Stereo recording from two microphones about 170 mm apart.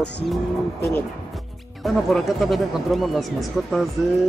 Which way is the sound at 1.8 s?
Centre (ahead or behind).